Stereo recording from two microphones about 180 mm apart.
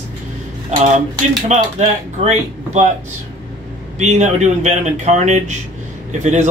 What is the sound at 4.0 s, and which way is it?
Speech, 40° right (ahead or behind).